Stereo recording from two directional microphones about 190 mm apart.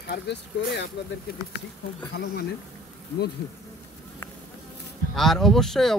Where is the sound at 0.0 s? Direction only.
60° left (ahead or behind).